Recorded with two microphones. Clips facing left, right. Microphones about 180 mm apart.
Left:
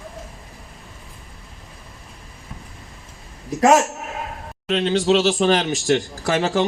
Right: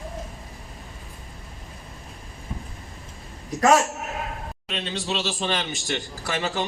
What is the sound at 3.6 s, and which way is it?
Speech, 30° left (ahead or behind).